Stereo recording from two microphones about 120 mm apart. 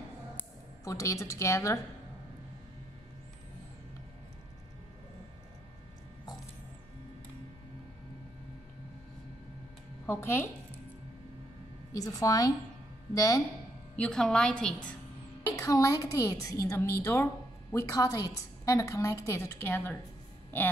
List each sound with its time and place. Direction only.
0.8 s a woman's voice: 25° left (ahead or behind)
10.0 s a woman's voice: 20° left (ahead or behind)
11.9 s a woman's voice: 30° left (ahead or behind)
13.9 s a woman's voice: 5° left (ahead or behind)
15.5 s a woman's voice: 25° left (ahead or behind)